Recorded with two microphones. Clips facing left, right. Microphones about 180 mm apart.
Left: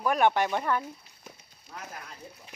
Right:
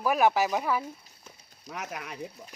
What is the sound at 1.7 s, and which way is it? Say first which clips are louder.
Speech: right 5 dB; 75° right (ahead or behind).